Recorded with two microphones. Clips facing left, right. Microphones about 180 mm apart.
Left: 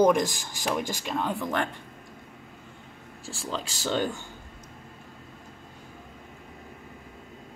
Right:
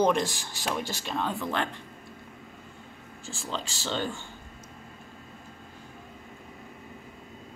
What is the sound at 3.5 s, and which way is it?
Speech, 10° left (ahead or behind).